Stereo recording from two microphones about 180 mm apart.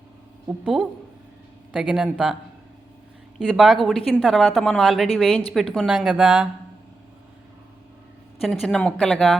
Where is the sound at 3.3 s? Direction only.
Centre (ahead or behind).